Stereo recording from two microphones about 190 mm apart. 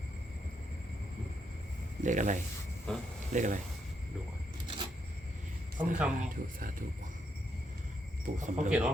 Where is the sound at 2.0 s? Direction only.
40° right (ahead or behind).